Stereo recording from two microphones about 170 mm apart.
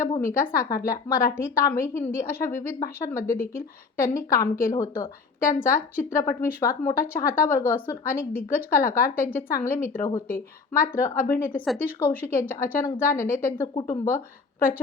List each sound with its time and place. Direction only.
0.2 s a woman's voice: 15° left (ahead or behind)